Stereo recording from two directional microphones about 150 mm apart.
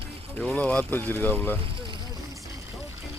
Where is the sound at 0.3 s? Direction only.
10° left (ahead or behind).